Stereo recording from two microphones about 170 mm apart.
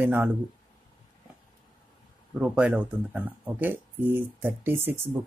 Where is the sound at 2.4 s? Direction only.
5° right (ahead or behind).